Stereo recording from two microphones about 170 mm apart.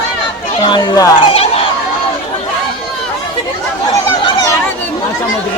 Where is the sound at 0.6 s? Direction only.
25° left (ahead or behind).